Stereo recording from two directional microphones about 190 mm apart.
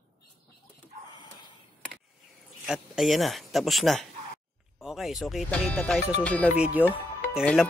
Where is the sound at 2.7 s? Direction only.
Centre (ahead or behind).